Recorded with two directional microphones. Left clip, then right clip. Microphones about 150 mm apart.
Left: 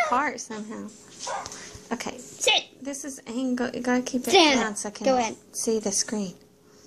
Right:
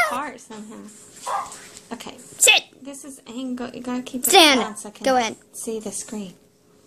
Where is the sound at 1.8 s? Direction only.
20° left (ahead or behind).